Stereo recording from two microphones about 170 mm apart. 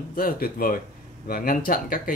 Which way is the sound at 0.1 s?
55° left (ahead or behind).